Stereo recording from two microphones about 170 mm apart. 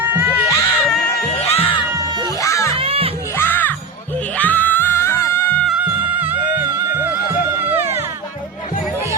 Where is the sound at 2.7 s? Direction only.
35° right (ahead or behind).